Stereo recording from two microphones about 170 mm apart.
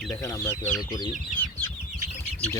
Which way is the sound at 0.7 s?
25° left (ahead or behind).